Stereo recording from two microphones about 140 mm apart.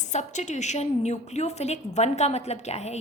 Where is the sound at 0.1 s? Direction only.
60° left (ahead or behind).